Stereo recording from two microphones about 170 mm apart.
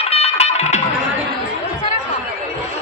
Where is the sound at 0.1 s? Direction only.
35° left (ahead or behind).